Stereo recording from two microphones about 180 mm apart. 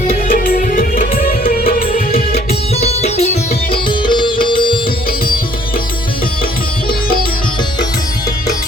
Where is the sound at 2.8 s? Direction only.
35° left (ahead or behind).